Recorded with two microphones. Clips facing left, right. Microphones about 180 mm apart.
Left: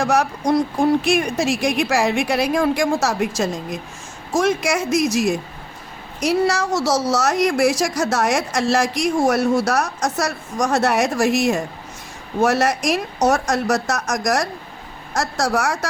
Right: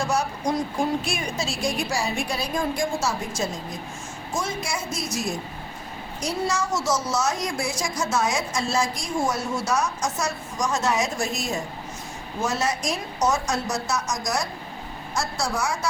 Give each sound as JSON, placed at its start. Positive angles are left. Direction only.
{"t": 0.0, "sound": "a woman's voice", "side_deg": 75}
{"t": 6.2, "sound": "a woman's voice", "side_deg": 70}